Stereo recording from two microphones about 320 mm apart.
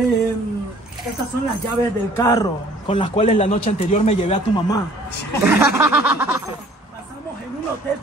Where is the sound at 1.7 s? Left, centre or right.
Centre.